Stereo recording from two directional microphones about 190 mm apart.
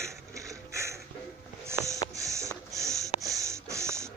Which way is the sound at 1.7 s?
15° right (ahead or behind).